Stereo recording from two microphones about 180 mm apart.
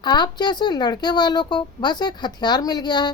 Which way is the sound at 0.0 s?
25° left (ahead or behind).